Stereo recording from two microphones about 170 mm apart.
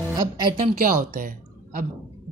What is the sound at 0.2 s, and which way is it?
Speech, 25° right (ahead or behind).